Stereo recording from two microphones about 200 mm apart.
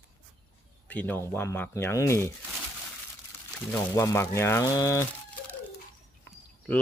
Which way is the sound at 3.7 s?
15° left (ahead or behind).